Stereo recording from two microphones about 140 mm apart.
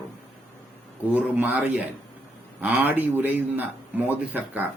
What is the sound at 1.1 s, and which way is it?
Speech, 10° right (ahead or behind).